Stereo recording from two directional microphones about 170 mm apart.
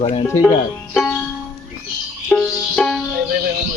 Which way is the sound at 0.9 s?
5° left (ahead or behind).